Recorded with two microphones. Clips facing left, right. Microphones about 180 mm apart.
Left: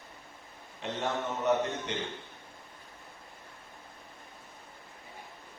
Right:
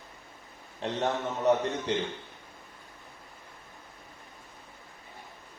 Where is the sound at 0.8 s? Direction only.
35° right (ahead or behind).